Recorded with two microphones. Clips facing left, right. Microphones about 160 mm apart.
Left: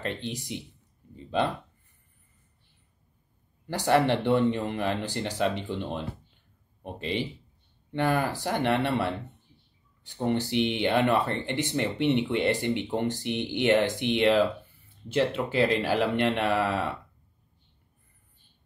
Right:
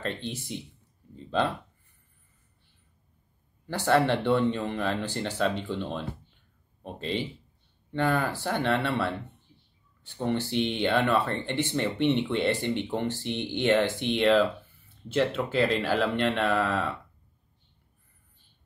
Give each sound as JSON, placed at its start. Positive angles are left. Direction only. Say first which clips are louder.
{"t": 0.0, "sound": "speech", "louder": "even", "side_deg": 15}
{"t": 3.6, "sound": "speech", "louder": "even", "side_deg": 15}
{"t": 10.2, "sound": "speech", "louder": "left 1 dB", "side_deg": 15}